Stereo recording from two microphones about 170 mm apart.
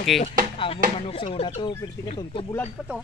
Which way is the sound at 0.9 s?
30° left (ahead or behind).